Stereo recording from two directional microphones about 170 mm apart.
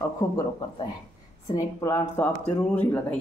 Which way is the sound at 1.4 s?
20° left (ahead or behind).